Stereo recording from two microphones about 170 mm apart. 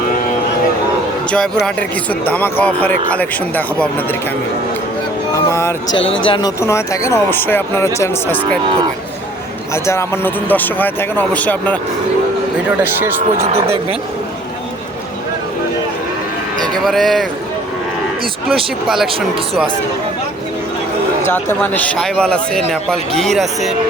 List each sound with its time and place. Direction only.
2.2 s a man's voice: 10° left (ahead or behind)
5.3 s speech: 15° left (ahead or behind)
6.1 s speech: 30° left (ahead or behind)
6.6 s a man's voice: 15° left (ahead or behind)
9.7 s a man's voice: 15° left (ahead or behind)
12.8 s speech: 10° right (ahead or behind)
16.6 s speech: centre (ahead or behind)
18.4 s speech: centre (ahead or behind)
21.2 s speech: 10° left (ahead or behind)